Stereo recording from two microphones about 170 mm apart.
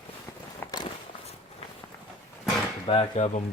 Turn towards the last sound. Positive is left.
turn(degrees=40)  # may be behind; listen again after turning